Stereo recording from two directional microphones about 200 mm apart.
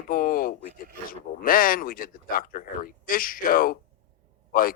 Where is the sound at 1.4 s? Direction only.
45° left (ahead or behind).